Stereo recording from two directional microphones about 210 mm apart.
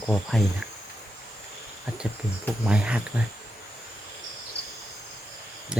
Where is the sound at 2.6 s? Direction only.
5° right (ahead or behind).